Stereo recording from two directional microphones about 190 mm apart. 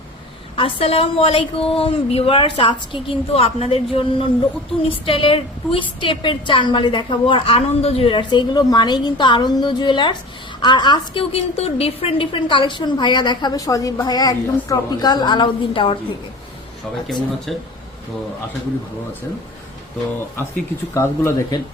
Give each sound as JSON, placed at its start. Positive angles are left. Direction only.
{"t": 0.5, "sound": "a woman's voice", "side_deg": 30}
{"t": 17.5, "sound": "speech", "side_deg": 0}
{"t": 20.9, "sound": "speech", "side_deg": 15}